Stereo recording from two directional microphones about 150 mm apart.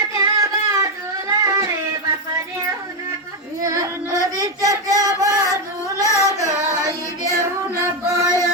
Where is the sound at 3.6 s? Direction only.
20° right (ahead or behind).